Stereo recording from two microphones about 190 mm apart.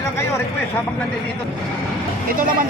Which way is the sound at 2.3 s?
45° right (ahead or behind).